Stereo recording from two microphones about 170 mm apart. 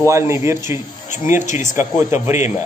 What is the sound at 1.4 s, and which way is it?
Speech, 45° left (ahead or behind).